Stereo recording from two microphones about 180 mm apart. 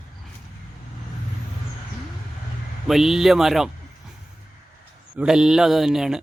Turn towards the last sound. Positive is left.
turn(degrees=-5)  # may be behind; listen again after turning